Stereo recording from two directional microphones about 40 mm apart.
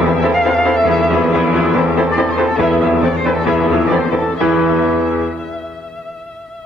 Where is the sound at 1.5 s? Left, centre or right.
Right.